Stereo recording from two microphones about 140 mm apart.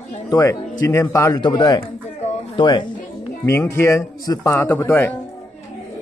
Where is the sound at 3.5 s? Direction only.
15° left (ahead or behind).